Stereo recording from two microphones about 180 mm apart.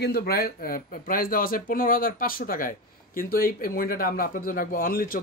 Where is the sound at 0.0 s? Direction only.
60° left (ahead or behind).